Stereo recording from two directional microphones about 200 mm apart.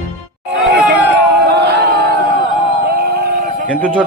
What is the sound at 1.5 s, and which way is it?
Crowd, 55° right (ahead or behind).